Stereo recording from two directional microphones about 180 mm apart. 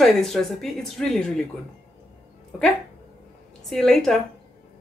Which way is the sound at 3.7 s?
Centre (ahead or behind).